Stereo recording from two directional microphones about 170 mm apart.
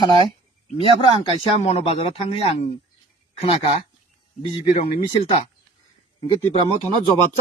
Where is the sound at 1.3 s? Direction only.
35° left (ahead or behind).